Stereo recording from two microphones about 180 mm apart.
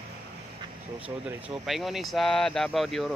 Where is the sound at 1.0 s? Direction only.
10° right (ahead or behind).